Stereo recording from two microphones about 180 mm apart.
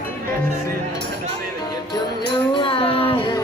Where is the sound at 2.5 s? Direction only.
30° left (ahead or behind).